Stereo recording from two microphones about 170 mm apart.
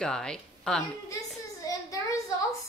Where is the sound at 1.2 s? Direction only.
20° left (ahead or behind).